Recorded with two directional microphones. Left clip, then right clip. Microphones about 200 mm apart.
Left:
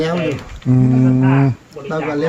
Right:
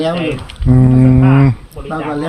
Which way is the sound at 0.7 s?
20° right (ahead or behind).